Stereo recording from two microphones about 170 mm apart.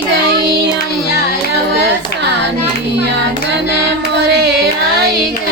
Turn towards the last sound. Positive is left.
turn(degrees=-85)